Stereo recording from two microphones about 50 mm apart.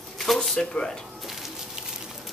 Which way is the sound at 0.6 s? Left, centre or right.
Centre.